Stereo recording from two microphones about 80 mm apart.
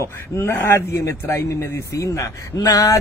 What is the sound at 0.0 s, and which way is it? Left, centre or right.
A man's voice, left.